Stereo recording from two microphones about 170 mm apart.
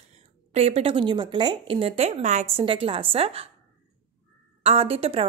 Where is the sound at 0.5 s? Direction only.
35° right (ahead or behind).